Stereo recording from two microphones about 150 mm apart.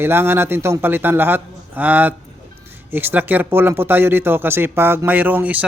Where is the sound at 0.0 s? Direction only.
15° right (ahead or behind).